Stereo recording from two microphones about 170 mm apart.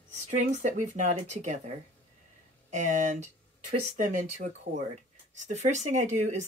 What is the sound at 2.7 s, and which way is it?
Speech, 45° right (ahead or behind).